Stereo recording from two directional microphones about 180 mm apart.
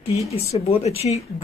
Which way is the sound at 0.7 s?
35° left (ahead or behind).